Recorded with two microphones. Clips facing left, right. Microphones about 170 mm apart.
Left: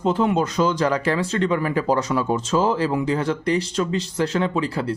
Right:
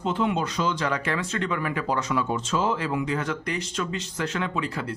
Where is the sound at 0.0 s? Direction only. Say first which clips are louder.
Left 5 dB; 40° left (ahead or behind).